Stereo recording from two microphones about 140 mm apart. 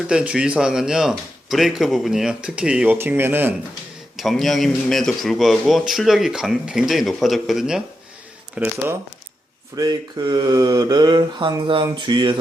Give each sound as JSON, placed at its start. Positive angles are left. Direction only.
{"t": 0.1, "sound": "speech", "side_deg": -5}
{"t": 4.2, "sound": "speech", "side_deg": 0}
{"t": 9.7, "sound": "speech", "side_deg": -30}